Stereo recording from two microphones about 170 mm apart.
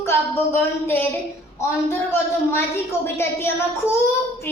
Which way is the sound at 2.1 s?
15° left (ahead or behind).